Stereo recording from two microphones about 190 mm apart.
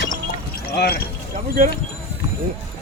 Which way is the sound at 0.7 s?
60° left (ahead or behind).